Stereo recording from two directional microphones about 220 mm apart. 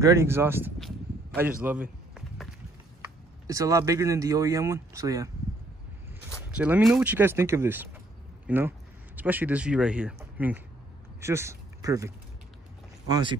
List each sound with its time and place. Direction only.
0.0 s speech: 15° right (ahead or behind)
0.7 s a sound: centre (ahead or behind)
3.0 s speech: 15° right (ahead or behind)
6.5 s speech: 5° right (ahead or behind)
13.1 s speech: 20° right (ahead or behind)